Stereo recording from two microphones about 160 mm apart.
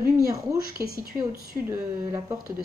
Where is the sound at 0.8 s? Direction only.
20° right (ahead or behind).